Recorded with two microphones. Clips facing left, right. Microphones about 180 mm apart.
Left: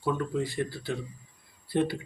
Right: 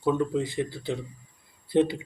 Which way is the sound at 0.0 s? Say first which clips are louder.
Right 4 dB; 20° right (ahead or behind).